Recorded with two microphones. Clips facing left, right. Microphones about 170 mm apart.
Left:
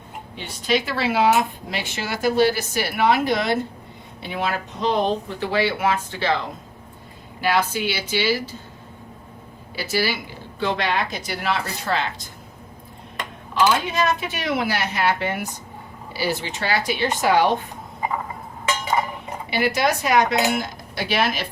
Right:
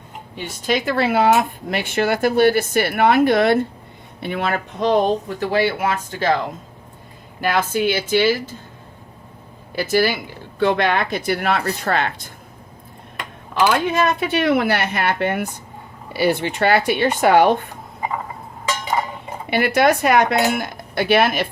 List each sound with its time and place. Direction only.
0.3 s a woman's voice: 50° right (ahead or behind)
7.4 s a woman's voice: 50° right (ahead or behind)
9.7 s a woman's voice: 50° right (ahead or behind)
13.8 s a woman's voice: 55° right (ahead or behind)
19.5 s a woman's voice: 55° right (ahead or behind)